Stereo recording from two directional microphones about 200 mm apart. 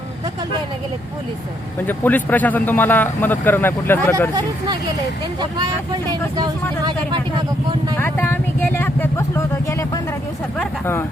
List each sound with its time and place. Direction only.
1.9 s speech: 10° left (ahead or behind)
4.4 s speech: 20° right (ahead or behind)
7.9 s speech: 10° left (ahead or behind)